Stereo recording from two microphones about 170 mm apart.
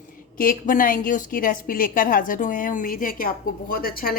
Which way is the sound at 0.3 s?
55° left (ahead or behind).